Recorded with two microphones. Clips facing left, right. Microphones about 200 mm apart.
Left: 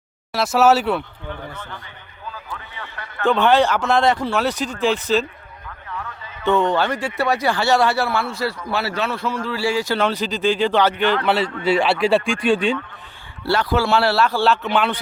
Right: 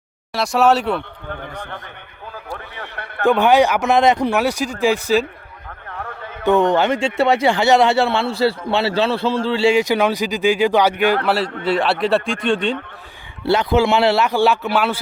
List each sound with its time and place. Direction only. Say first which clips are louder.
0.3 s speech: even; centre (ahead or behind)
3.2 s speech: right 2 dB; 15° right (ahead or behind)
5.6 s a sound: right 1 dB; 55° right (ahead or behind)
6.4 s speech: right 3 dB; 15° right (ahead or behind)
11.6 s speech: left 1 dB; centre (ahead or behind)
13.4 s speech: right 4 dB; 20° right (ahead or behind)